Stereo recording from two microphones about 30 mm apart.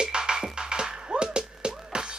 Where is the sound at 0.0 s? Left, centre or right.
Right.